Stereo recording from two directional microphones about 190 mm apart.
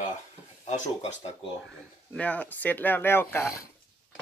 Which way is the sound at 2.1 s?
5° left (ahead or behind).